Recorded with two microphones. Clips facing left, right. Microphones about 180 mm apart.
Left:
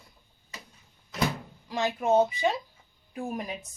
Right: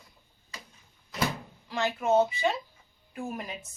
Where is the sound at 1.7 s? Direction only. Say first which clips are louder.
Left 1 dB; 15° left (ahead or behind).